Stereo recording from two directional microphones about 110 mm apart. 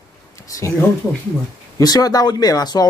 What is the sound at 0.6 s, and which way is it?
Speech, 25° left (ahead or behind).